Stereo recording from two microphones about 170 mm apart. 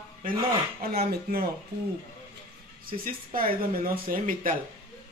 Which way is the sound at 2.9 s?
60° right (ahead or behind).